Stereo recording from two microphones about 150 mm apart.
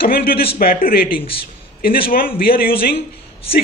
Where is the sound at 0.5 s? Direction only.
75° left (ahead or behind).